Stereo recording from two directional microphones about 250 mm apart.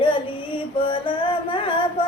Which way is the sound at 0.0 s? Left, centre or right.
Left.